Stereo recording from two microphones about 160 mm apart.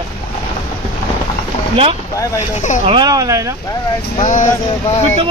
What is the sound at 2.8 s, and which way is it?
Speech, 30° right (ahead or behind).